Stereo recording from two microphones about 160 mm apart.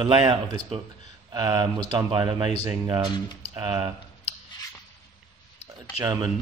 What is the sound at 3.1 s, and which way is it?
Speech, 30° left (ahead or behind).